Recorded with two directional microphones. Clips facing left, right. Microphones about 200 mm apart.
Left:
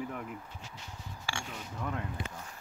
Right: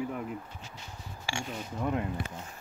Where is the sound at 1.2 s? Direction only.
20° right (ahead or behind).